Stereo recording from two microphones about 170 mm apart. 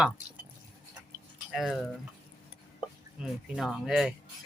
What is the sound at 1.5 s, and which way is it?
Speech, centre (ahead or behind).